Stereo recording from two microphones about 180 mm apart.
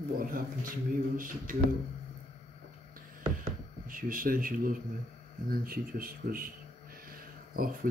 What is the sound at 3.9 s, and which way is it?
Speech, 50° right (ahead or behind).